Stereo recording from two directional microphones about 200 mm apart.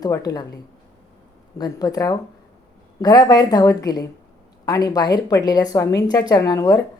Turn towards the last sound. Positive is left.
turn(degrees=20)  # may be behind; listen again after turning